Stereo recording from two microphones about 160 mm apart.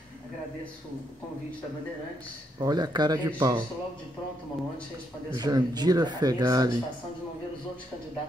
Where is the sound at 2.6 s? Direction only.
25° right (ahead or behind).